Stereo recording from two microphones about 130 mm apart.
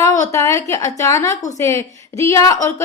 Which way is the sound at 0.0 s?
25° left (ahead or behind).